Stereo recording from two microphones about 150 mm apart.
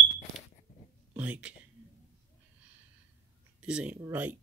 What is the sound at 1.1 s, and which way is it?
Speech, 10° right (ahead or behind).